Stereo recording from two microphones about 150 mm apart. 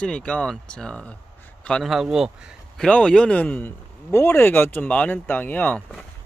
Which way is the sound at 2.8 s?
5° left (ahead or behind).